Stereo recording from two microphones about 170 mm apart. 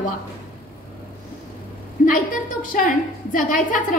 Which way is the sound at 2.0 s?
50° left (ahead or behind).